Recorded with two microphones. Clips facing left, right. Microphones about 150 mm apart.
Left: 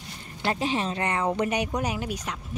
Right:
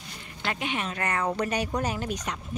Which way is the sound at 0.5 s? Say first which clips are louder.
Left 4 dB; 30° left (ahead or behind).